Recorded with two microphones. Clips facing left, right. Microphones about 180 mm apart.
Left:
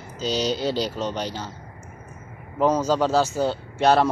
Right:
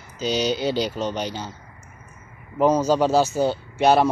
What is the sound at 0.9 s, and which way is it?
Speech, centre (ahead or behind).